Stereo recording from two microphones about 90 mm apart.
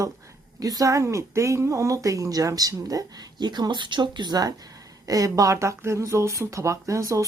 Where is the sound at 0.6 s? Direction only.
40° right (ahead or behind).